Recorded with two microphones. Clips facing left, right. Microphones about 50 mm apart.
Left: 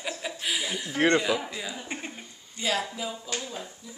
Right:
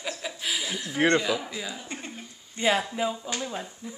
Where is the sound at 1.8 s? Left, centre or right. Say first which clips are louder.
Left 2 dB; centre.